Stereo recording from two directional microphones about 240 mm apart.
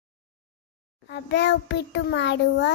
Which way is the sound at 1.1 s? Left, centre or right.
Left.